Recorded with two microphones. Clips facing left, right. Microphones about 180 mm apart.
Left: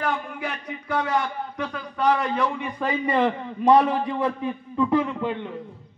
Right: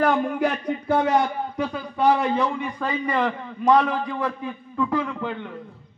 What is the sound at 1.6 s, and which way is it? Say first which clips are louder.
Speech: right 3 dB; 10° right (ahead or behind).